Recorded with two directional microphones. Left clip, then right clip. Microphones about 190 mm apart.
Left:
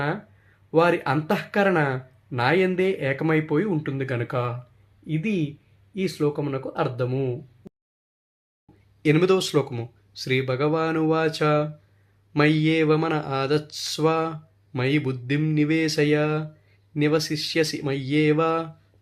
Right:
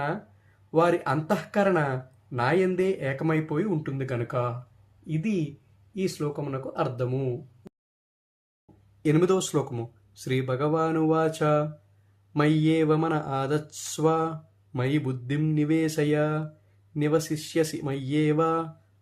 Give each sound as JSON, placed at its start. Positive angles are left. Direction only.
{"t": 0.7, "sound": "mantra", "side_deg": 20}
{"t": 7.6, "sound": "a sound", "side_deg": 0}
{"t": 9.0, "sound": "speech", "side_deg": 5}
{"t": 10.2, "sound": "mantra", "side_deg": 10}